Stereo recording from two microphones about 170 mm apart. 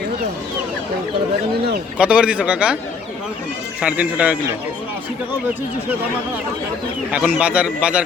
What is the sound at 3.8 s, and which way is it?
Speech, 5° right (ahead or behind).